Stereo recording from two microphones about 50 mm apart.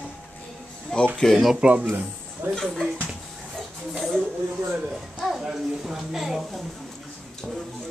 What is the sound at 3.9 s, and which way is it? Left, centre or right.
Speech, centre.